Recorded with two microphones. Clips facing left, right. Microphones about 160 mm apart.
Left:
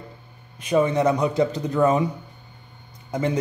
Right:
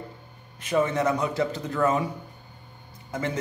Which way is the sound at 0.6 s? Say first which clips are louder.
Left 4 dB; 15° left (ahead or behind).